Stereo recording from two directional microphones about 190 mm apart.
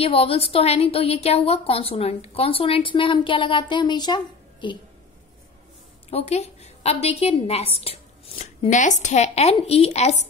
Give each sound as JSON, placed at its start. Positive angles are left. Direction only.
{"t": 0.0, "sound": "a woman's voice", "side_deg": 30}
{"t": 6.0, "sound": "a woman's voice", "side_deg": 35}